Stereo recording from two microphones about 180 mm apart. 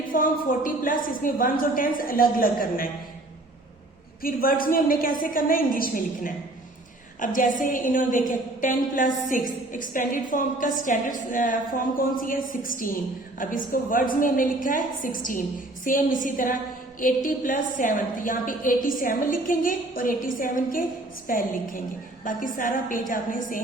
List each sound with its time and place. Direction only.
0.1 s a woman's voice: 50° left (ahead or behind)
4.2 s a woman's voice: 55° left (ahead or behind)